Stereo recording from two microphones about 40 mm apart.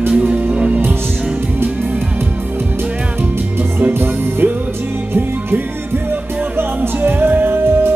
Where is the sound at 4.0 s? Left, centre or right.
Right.